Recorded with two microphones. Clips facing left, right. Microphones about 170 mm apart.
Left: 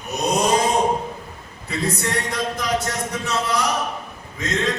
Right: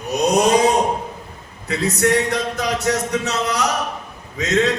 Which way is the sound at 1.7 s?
70° right (ahead or behind).